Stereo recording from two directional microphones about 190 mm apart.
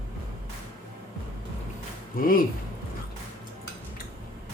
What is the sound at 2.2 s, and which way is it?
Speech, 50° left (ahead or behind).